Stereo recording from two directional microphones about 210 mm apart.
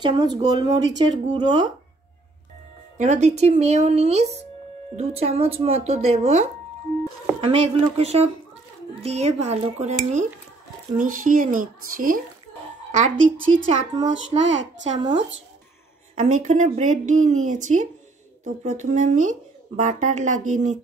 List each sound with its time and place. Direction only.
0.0 s speech: 20° right (ahead or behind)
3.0 s speech: 35° right (ahead or behind)
14.1 s a child's voice: 60° right (ahead or behind)
15.0 s speech: 20° right (ahead or behind)
16.2 s speech: 35° right (ahead or behind)